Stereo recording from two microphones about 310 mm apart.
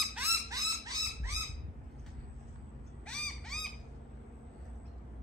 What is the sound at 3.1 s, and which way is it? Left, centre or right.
Owl, centre.